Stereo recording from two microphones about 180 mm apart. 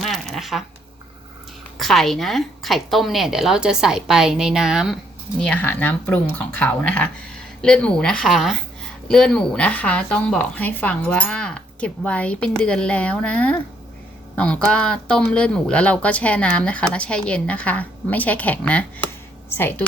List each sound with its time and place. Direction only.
0.0 s a sound: centre (ahead or behind)
1.8 s a woman's voice: centre (ahead or behind)
5.4 s a woman's voice: 10° left (ahead or behind)